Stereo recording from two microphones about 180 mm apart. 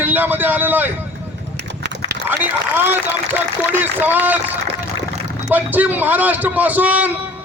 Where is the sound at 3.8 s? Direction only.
10° right (ahead or behind).